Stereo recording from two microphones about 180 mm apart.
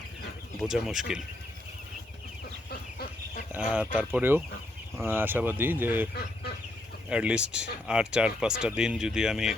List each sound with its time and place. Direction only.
0.7 s speech: 5° right (ahead or behind)
2.6 s goose: 60° left (ahead or behind)
3.5 s speech: 10° right (ahead or behind)
7.1 s speech: 5° right (ahead or behind)